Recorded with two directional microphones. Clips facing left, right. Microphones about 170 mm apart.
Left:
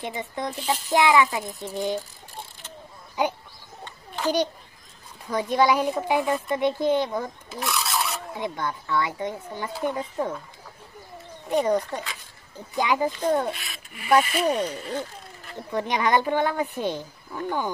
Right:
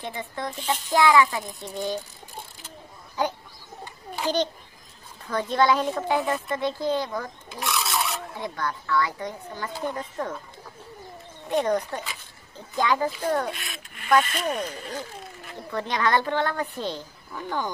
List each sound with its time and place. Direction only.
0.0 s speech: 20° left (ahead or behind)
0.6 s speech: centre (ahead or behind)
0.9 s speech: 20° left (ahead or behind)
3.8 s a sound: 10° right (ahead or behind)
5.3 s speech: 15° left (ahead or behind)
7.5 s filing: centre (ahead or behind)
8.4 s speech: 20° left (ahead or behind)
11.4 s speech: 5° left (ahead or behind)
13.5 s speech: centre (ahead or behind)
15.7 s speech: 15° left (ahead or behind)